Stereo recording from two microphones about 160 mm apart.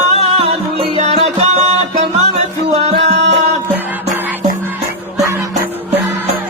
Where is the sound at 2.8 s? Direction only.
40° right (ahead or behind).